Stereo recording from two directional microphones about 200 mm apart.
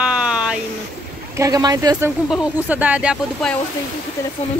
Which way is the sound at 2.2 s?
5° right (ahead or behind).